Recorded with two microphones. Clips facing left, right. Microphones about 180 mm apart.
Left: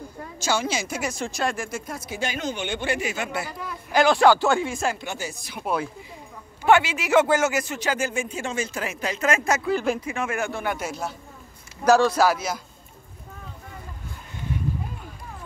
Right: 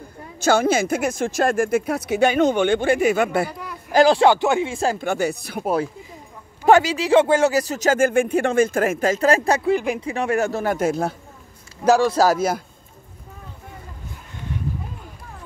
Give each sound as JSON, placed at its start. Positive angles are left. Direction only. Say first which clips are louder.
{"t": 0.4, "sound": "speech", "louder": "right 8 dB", "side_deg": -55}
{"t": 3.9, "sound": "speech", "louder": "right 3 dB", "side_deg": -30}
{"t": 4.9, "sound": "speech", "louder": "right 11 dB", "side_deg": -55}
{"t": 5.6, "sound": "speech", "louder": "right 4 dB", "side_deg": -40}
{"t": 11.8, "sound": "speech", "louder": "right 1 dB", "side_deg": -20}
{"t": 12.2, "sound": "speech", "louder": "right 4 dB", "side_deg": -45}